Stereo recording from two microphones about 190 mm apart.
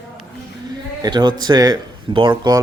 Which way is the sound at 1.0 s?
20° right (ahead or behind).